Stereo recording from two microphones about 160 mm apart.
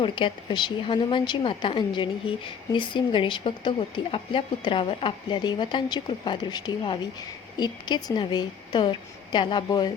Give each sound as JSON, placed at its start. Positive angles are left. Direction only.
{"t": 0.0, "sound": "a woman's voice", "side_deg": 30}